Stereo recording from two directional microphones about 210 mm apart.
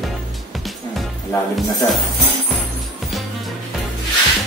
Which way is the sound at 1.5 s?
Centre (ahead or behind).